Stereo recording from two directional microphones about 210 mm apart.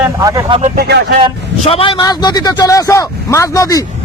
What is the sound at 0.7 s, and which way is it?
Speech, 50° right (ahead or behind).